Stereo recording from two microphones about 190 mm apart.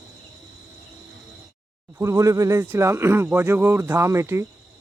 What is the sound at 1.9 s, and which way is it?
Speech, 15° right (ahead or behind).